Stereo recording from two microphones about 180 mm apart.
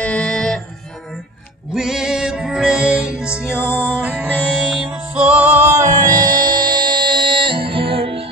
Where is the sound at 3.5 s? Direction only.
15° left (ahead or behind).